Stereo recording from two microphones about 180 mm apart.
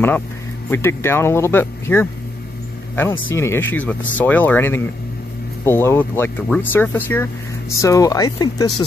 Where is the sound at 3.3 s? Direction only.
15° left (ahead or behind).